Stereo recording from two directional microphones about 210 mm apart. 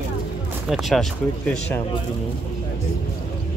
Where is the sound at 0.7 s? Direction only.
Centre (ahead or behind).